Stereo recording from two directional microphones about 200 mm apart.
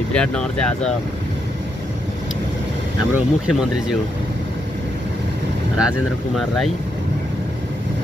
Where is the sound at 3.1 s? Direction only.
5° right (ahead or behind).